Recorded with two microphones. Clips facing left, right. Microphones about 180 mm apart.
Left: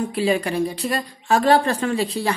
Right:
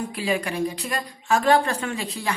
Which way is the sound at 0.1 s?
30° left (ahead or behind).